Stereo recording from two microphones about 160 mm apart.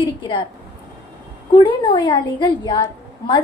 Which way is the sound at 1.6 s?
30° left (ahead or behind).